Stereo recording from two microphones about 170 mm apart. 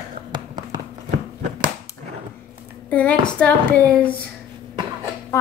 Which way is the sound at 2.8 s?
5° left (ahead or behind).